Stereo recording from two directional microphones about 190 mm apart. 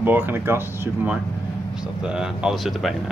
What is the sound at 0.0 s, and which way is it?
Speech, 10° right (ahead or behind).